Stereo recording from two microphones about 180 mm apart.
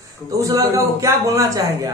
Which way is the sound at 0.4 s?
20° right (ahead or behind).